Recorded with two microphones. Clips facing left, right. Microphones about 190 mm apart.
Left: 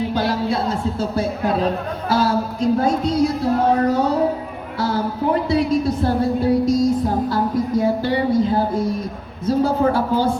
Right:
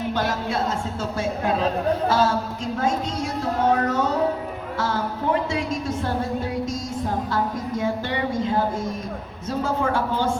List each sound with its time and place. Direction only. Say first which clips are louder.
0.1 s speech: left 4 dB; 35° left (ahead or behind)
4.8 s a sound: left 5 dB; 35° left (ahead or behind)
9.5 s speech: left 7 dB; 35° left (ahead or behind)